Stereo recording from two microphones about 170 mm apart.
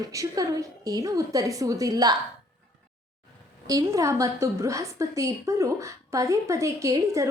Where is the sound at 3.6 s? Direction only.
20° right (ahead or behind).